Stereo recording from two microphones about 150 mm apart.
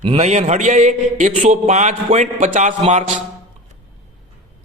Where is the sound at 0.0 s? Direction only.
45° right (ahead or behind).